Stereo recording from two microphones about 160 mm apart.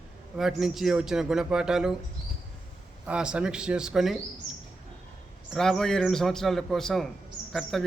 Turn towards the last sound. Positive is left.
turn(degrees=0)  # may be behind; listen again after turning